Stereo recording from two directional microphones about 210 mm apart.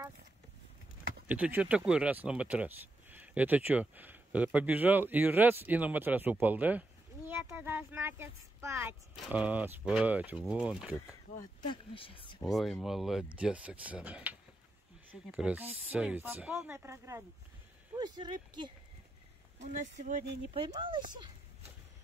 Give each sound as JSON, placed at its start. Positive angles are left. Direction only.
{"t": 1.2, "sound": "speech", "side_deg": -5}
{"t": 11.6, "sound": "speech", "side_deg": 25}
{"t": 12.4, "sound": "speech", "side_deg": 0}
{"t": 19.6, "sound": "speech", "side_deg": -35}